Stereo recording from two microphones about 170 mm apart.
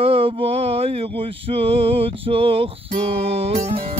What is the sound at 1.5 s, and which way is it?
Music, 35° right (ahead or behind).